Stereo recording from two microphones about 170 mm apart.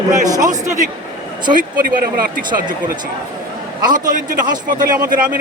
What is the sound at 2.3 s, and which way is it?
Speech, 50° right (ahead or behind).